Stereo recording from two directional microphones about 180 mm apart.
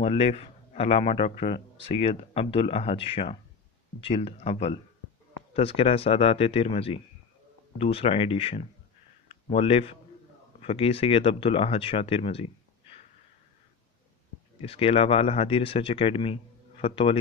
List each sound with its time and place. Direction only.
0.0 s a man's voice: 35° left (ahead or behind)
14.6 s a man's voice: 35° left (ahead or behind)